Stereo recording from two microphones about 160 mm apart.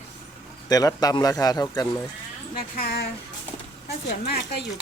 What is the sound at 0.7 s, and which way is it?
Speech, 25° left (ahead or behind).